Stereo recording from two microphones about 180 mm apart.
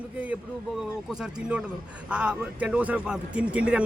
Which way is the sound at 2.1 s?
5° right (ahead or behind).